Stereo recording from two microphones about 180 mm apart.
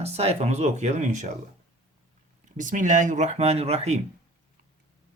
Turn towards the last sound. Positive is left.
turn(degrees=-35)  # may be behind; listen again after turning